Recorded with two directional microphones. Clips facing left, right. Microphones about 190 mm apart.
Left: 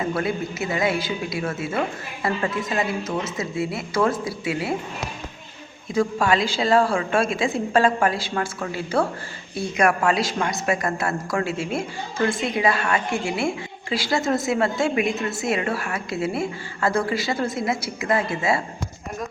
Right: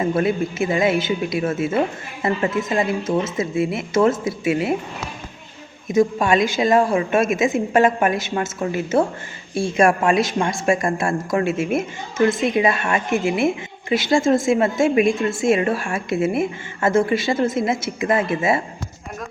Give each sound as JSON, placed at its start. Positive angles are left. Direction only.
{"t": 0.0, "sound": "speech", "side_deg": -25}
{"t": 5.9, "sound": "speech", "side_deg": -20}